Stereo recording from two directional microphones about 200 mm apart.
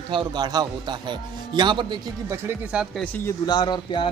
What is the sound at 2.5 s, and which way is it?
Speech, 5° right (ahead or behind).